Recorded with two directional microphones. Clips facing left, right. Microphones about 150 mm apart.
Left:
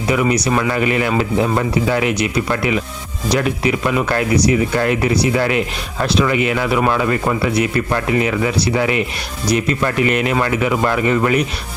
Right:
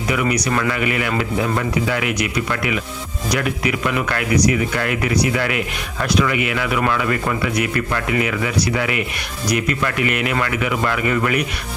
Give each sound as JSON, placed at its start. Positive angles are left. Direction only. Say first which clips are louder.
{"t": 0.1, "sound": "speech", "louder": "left 4 dB", "side_deg": 30}